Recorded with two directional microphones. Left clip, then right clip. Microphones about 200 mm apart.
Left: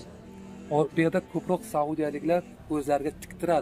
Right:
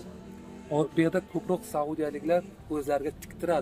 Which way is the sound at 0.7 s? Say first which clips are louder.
Left 2 dB; 15° left (ahead or behind).